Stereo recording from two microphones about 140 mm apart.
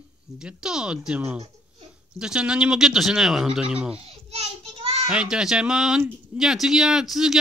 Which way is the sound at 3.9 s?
45° right (ahead or behind).